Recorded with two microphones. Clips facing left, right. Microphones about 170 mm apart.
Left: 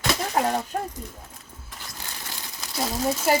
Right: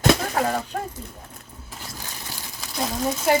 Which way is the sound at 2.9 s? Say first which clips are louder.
Right 1 dB; centre (ahead or behind).